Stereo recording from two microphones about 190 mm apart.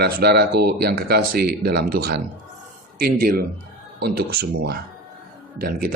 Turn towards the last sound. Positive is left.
turn(degrees=-50)  # may be behind; listen again after turning